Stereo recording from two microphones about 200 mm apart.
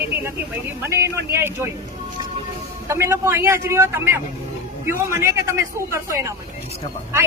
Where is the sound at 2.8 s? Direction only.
15° right (ahead or behind).